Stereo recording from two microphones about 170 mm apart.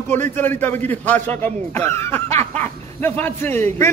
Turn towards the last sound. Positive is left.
turn(degrees=15)  # may be behind; listen again after turning